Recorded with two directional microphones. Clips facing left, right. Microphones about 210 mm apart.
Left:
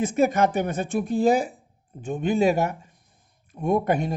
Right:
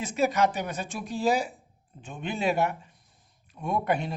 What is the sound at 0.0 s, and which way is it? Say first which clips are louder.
A man's voice: left 4 dB; 55° left (ahead or behind).